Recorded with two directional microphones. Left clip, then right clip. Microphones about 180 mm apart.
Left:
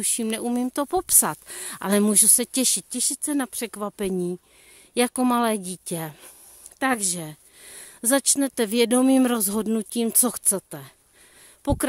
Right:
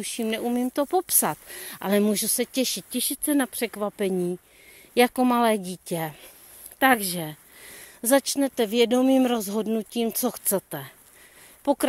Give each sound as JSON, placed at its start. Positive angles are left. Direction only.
{"t": 0.0, "sound": "speech", "side_deg": 40}
{"t": 2.9, "sound": "a woman's voice", "side_deg": 10}
{"t": 6.8, "sound": "speech", "side_deg": 15}
{"t": 7.6, "sound": "speech", "side_deg": 30}
{"t": 10.4, "sound": "speech", "side_deg": 15}
{"t": 11.6, "sound": "speech", "side_deg": 30}